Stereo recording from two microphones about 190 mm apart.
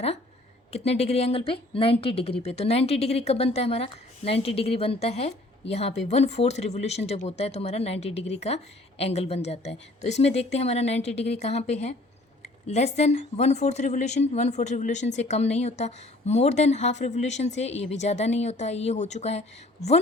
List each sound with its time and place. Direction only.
0.7 s speech: 35° left (ahead or behind)